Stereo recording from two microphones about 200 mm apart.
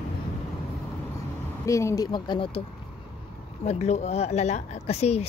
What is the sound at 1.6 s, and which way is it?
Speech, 15° left (ahead or behind).